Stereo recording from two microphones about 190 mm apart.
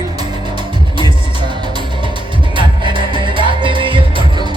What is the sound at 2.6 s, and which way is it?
Music, 25° right (ahead or behind).